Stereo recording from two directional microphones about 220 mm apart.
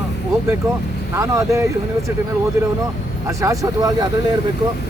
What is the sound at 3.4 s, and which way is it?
Speech, 15° right (ahead or behind).